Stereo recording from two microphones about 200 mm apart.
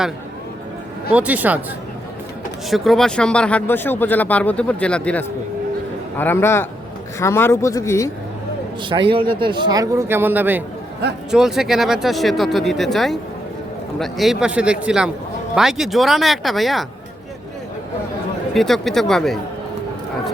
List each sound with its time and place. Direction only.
1.1 s speech: 5° right (ahead or behind)
2.6 s speech: centre (ahead or behind)
8.9 s a man's voice: 25° right (ahead or behind); by 16.8 s centre (ahead or behind)
18.5 s speech: centre (ahead or behind)